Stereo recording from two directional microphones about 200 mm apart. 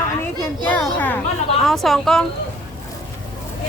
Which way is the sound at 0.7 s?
10° left (ahead or behind).